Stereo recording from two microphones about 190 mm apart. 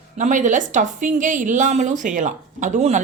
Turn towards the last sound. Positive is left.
turn(degrees=-40)  # may be behind; listen again after turning